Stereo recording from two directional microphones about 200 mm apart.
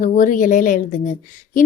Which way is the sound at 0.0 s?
40° left (ahead or behind).